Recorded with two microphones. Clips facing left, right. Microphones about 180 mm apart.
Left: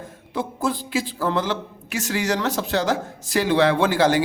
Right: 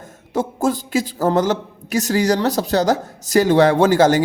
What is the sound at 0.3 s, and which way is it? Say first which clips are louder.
A man's voice: right 5 dB; 45° right (ahead or behind).